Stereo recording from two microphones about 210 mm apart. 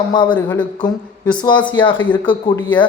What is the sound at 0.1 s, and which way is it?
Speech, 20° left (ahead or behind).